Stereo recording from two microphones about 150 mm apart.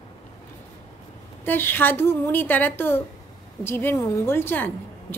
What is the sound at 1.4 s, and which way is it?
A woman's voice, 15° left (ahead or behind).